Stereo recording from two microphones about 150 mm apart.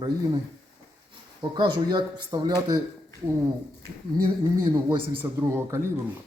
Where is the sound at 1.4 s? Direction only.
30° right (ahead or behind).